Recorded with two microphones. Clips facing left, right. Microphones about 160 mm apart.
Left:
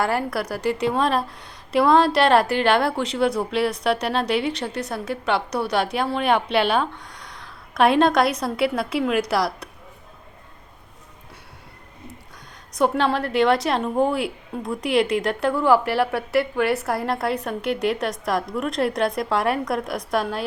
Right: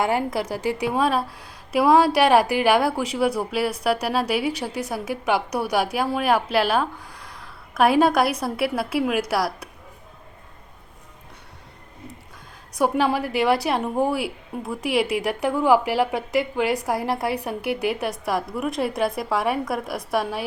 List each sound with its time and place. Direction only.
0.0 s a woman's voice: 15° right (ahead or behind)
12.7 s a woman's voice: 10° right (ahead or behind)